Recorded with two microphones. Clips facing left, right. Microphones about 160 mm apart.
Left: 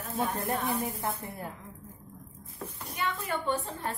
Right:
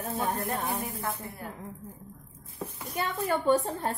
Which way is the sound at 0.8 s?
25° left (ahead or behind).